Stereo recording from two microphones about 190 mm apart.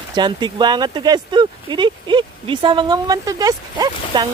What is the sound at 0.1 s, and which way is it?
Speech, 25° right (ahead or behind).